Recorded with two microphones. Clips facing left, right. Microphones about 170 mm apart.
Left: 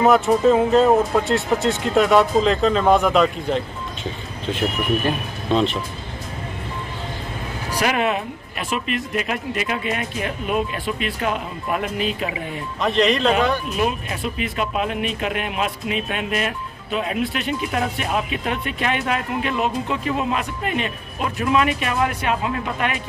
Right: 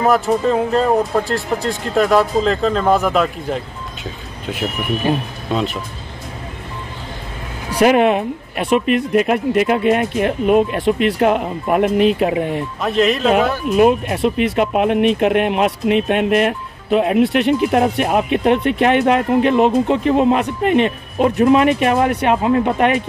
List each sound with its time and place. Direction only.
0.0 s speech: centre (ahead or behind)
7.8 s speech: 50° right (ahead or behind)
12.8 s speech: centre (ahead or behind)
13.7 s speech: 55° right (ahead or behind)
17.6 s speech: 50° right (ahead or behind)
17.9 s speech: 60° right (ahead or behind)
21.2 s speech: 45° right (ahead or behind)
22.1 s speech: 65° right (ahead or behind)
22.4 s speech: 45° right (ahead or behind)